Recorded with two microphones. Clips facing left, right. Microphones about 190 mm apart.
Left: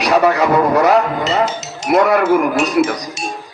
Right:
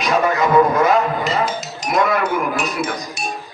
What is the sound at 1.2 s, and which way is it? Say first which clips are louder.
Music: left 3 dB; 25° left (ahead or behind).